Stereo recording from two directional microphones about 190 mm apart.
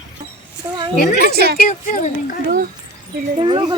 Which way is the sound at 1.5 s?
45° left (ahead or behind).